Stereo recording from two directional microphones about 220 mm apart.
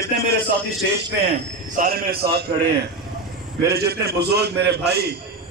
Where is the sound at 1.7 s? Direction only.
40° right (ahead or behind).